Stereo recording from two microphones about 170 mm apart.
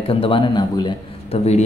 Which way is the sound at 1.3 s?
40° left (ahead or behind).